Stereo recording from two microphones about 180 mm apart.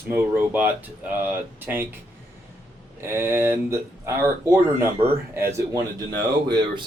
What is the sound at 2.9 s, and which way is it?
Speech, 15° right (ahead or behind).